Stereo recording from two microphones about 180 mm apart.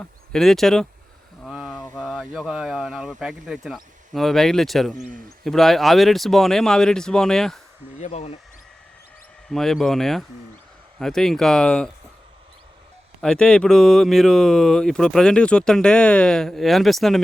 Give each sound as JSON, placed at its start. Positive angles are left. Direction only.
{"t": 0.0, "sound": "speech", "side_deg": 0}
{"t": 1.5, "sound": "a sound", "side_deg": -5}
{"t": 2.0, "sound": "speech", "side_deg": 0}
{"t": 7.9, "sound": "speech", "side_deg": 35}
{"t": 9.5, "sound": "speech", "side_deg": 0}
{"t": 13.2, "sound": "speech", "side_deg": 5}